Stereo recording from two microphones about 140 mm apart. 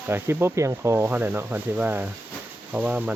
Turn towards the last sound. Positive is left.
turn(degrees=-10)  # may be behind; listen again after turning